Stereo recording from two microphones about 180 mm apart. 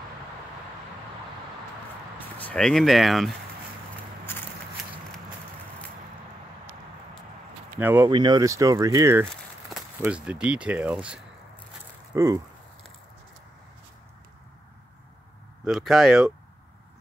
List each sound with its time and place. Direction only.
2.1 s speech: 10° left (ahead or behind)
7.8 s speech: 10° right (ahead or behind)
8.1 s speech: 25° right (ahead or behind); by 11.1 s 5° right (ahead or behind)
12.1 s speech: 20° right (ahead or behind)
15.6 s speech: centre (ahead or behind)